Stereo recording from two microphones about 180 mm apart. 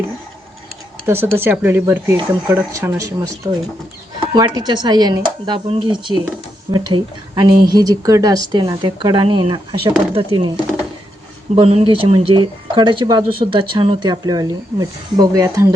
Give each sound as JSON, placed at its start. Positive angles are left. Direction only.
{"t": 1.0, "sound": "speech", "side_deg": -15}
{"t": 11.5, "sound": "speech", "side_deg": -30}